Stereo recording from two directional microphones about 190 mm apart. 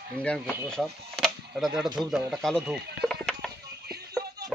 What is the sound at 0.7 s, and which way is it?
Speech, centre (ahead or behind).